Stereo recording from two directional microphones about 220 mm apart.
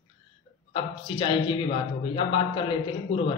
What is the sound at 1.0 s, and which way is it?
Speech, 20° left (ahead or behind).